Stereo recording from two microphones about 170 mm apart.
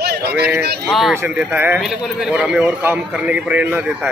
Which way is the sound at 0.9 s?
Centre (ahead or behind).